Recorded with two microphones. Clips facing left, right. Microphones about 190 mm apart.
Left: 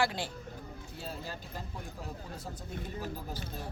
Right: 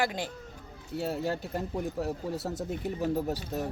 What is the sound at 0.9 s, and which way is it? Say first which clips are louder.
Speech: right 12 dB; 70° right (ahead or behind).